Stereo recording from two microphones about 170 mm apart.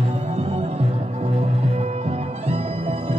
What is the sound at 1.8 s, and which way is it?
Music, 35° right (ahead or behind).